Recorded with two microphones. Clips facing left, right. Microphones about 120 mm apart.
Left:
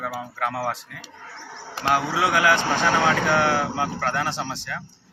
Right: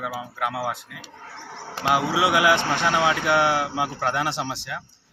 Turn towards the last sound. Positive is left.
turn(degrees=-15)  # may be behind; listen again after turning